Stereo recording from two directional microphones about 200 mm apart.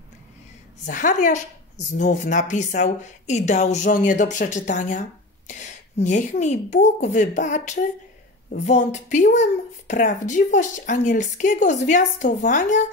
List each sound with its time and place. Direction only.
0.8 s speech: 40° left (ahead or behind)